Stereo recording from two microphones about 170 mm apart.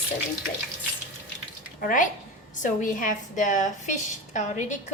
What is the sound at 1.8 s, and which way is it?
A woman's voice, 55° left (ahead or behind).